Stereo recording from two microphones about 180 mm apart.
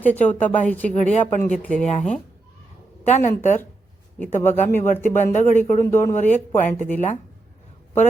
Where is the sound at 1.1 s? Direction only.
40° left (ahead or behind).